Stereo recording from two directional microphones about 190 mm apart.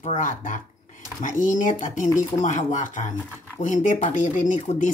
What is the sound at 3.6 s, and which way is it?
Speech, 40° left (ahead or behind).